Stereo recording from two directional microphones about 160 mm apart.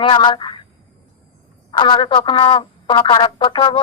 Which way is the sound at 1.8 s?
30° left (ahead or behind).